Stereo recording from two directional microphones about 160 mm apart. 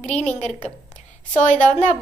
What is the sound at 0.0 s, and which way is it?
Speech, 45° left (ahead or behind).